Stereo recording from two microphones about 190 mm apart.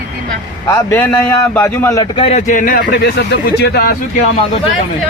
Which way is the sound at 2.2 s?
40° left (ahead or behind).